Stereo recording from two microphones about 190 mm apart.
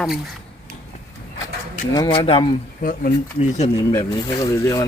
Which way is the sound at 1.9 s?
25° left (ahead or behind).